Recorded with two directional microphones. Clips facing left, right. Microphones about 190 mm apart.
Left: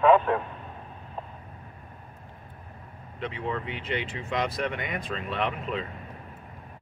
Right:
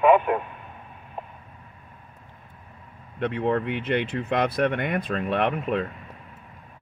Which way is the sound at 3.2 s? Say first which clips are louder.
Right 8 dB; 60° right (ahead or behind).